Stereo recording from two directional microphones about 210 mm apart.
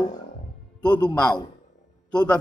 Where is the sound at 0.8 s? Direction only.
20° left (ahead or behind).